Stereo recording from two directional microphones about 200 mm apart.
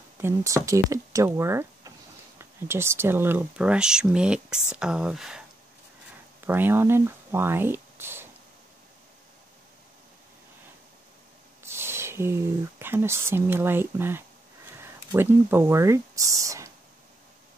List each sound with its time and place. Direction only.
0.2 s speech: 15° right (ahead or behind)
6.4 s speech: 10° right (ahead or behind)
11.6 s speech: 10° right (ahead or behind)